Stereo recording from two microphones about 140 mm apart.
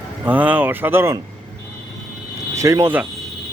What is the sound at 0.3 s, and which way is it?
Speech, 15° right (ahead or behind).